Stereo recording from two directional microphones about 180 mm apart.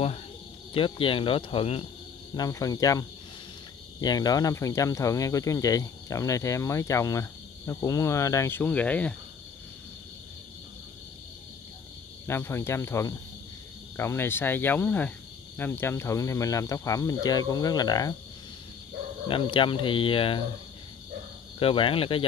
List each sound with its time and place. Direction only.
0.7 s speech: 30° left (ahead or behind); by 9.1 s 10° left (ahead or behind)
12.3 s speech: 15° left (ahead or behind)
19.2 s speech: 30° left (ahead or behind)
21.5 s speech: 30° left (ahead or behind)